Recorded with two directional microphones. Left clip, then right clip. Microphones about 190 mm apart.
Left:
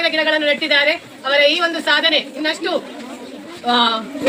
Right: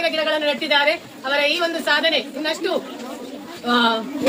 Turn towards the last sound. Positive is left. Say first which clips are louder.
# left 3 dB
turn(degrees=-10)  # may be behind; listen again after turning